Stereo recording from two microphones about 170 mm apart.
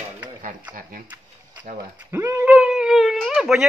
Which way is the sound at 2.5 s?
5° right (ahead or behind).